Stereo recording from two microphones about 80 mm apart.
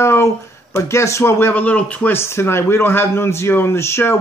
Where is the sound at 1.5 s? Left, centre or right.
Centre.